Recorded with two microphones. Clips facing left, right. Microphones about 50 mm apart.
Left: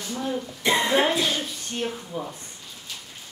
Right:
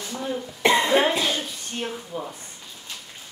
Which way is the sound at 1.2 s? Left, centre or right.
Centre.